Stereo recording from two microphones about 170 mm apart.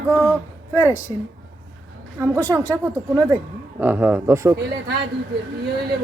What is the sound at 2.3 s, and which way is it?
Speech, 20° right (ahead or behind).